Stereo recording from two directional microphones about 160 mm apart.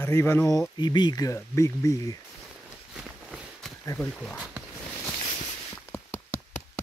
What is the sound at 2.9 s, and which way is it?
Walk, 5° right (ahead or behind).